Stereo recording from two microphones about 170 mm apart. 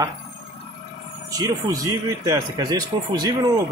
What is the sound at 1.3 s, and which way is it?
Speech, 20° right (ahead or behind).